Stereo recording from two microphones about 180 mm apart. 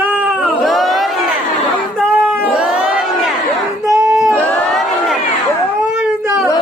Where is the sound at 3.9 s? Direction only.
20° right (ahead or behind).